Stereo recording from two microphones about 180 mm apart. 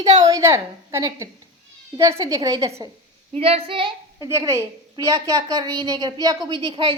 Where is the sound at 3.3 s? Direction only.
35° right (ahead or behind).